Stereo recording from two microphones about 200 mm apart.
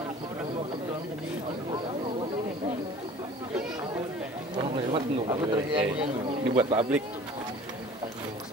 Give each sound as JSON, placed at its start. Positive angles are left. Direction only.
{"t": 4.6, "sound": "a man's voice", "side_deg": -30}